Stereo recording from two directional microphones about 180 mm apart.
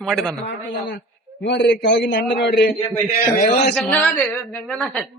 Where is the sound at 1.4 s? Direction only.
75° left (ahead or behind).